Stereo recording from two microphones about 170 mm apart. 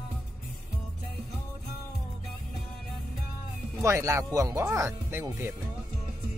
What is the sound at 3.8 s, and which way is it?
Speech, 15° right (ahead or behind).